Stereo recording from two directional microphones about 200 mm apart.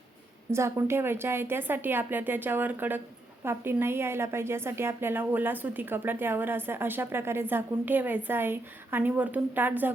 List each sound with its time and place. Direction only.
0.5 s a woman's voice: 15° right (ahead or behind)